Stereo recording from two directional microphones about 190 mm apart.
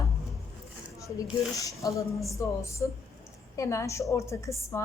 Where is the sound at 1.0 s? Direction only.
15° left (ahead or behind).